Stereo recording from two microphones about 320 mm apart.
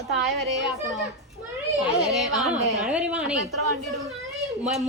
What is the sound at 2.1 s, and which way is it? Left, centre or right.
A woman's voice, centre.